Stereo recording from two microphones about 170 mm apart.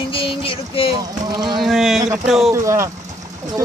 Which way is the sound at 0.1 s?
30° left (ahead or behind).